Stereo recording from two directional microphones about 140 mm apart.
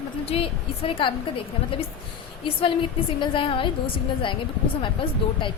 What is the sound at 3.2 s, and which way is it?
A woman's voice, 40° left (ahead or behind).